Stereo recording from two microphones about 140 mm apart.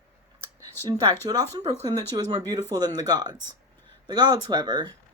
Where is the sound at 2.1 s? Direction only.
30° right (ahead or behind).